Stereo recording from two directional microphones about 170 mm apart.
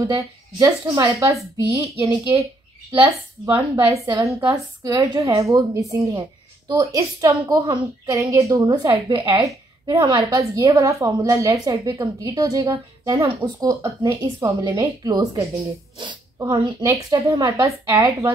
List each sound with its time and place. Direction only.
0.1 s a woman's voice: 20° right (ahead or behind)